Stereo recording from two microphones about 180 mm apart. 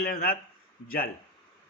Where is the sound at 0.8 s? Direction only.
55° left (ahead or behind).